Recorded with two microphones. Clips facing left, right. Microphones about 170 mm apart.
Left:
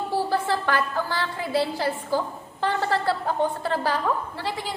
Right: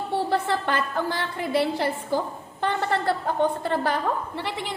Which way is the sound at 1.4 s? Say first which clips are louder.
Right 2 dB; 20° right (ahead or behind).